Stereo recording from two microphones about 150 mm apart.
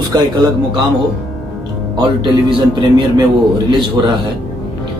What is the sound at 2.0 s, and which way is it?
Speech, 35° right (ahead or behind).